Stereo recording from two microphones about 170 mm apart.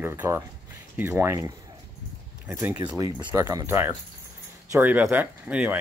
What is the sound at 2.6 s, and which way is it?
Speech, 10° right (ahead or behind).